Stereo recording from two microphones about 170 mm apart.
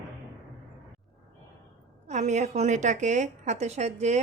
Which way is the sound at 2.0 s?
45° right (ahead or behind).